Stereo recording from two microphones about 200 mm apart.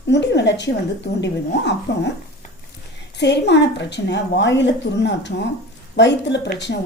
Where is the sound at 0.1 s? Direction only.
60° left (ahead or behind).